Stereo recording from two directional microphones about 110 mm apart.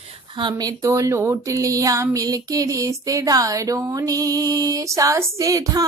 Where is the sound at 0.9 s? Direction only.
25° right (ahead or behind).